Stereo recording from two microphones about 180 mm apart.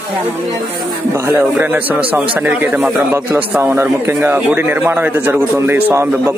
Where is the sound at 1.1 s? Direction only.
15° right (ahead or behind).